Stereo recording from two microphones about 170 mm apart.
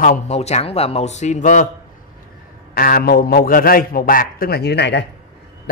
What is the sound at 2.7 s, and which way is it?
A man's voice, 60° left (ahead or behind).